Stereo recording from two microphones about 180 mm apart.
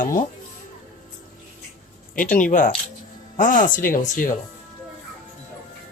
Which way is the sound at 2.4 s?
45° left (ahead or behind).